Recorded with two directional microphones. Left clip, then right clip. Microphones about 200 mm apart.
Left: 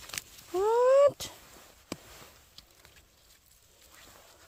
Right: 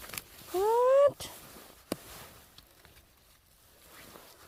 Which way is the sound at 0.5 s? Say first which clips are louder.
Left 1 dB; centre (ahead or behind).